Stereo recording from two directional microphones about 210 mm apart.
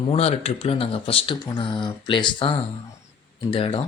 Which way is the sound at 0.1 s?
30° left (ahead or behind).